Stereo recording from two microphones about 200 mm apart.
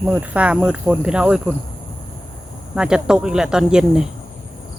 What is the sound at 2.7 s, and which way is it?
Speech, 5° right (ahead or behind).